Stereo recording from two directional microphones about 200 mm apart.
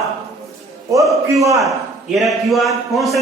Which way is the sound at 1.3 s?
15° right (ahead or behind).